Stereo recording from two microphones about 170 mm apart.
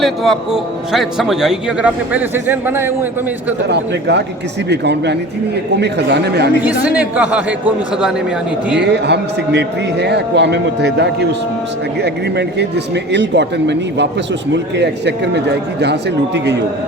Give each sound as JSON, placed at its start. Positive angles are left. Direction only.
{"t": 0.0, "sound": "speech", "side_deg": 0}
{"t": 3.7, "sound": "a man's voice", "side_deg": -85}
{"t": 6.6, "sound": "speech", "side_deg": -10}
{"t": 8.7, "sound": "a man's voice", "side_deg": -85}